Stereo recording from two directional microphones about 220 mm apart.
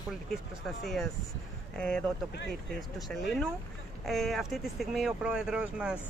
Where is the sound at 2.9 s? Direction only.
Centre (ahead or behind).